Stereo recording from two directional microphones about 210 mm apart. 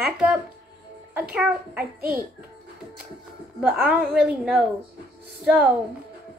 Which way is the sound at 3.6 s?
5° right (ahead or behind).